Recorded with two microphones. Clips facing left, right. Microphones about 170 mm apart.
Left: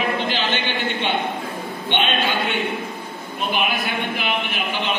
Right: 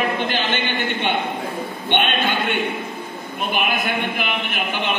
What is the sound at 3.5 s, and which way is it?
A man's voice, 50° right (ahead or behind).